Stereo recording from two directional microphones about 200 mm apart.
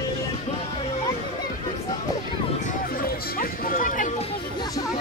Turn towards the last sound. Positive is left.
turn(degrees=40)  # may be behind; listen again after turning